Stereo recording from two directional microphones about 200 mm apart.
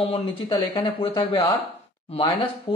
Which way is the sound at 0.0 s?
25° left (ahead or behind).